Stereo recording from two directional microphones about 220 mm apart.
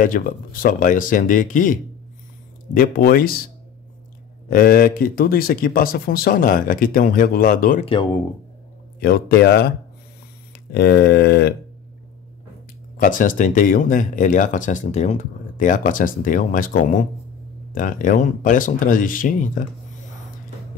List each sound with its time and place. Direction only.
0.0 s speech: 40° left (ahead or behind)
4.5 s speech: 40° left (ahead or behind)
7.8 s speech: 20° left (ahead or behind)
9.0 s speech: 45° left (ahead or behind)
10.7 s speech: 50° left (ahead or behind)
12.9 s speech: 35° left (ahead or behind)